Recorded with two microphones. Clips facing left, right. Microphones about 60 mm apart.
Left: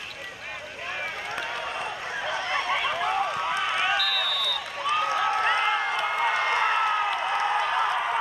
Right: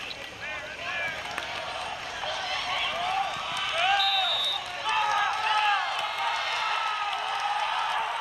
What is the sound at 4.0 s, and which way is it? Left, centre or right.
Basketball bounce, centre.